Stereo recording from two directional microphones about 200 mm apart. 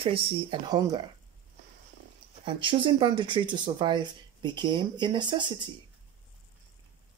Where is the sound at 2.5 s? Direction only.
25° right (ahead or behind).